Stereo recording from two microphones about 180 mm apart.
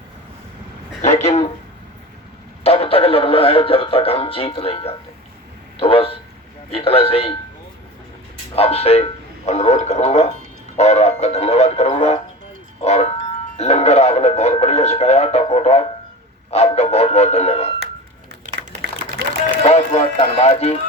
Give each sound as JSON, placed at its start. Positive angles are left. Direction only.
{"t": 1.0, "sound": "speech", "side_deg": 35}
{"t": 2.6, "sound": "speech", "side_deg": 30}
{"t": 8.5, "sound": "speech", "side_deg": 35}
{"t": 10.8, "sound": "music", "side_deg": 40}
{"t": 13.6, "sound": "speech", "side_deg": 35}
{"t": 19.6, "sound": "speech", "side_deg": 35}